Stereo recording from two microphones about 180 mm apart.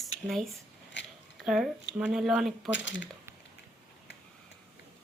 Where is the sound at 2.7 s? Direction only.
90° left.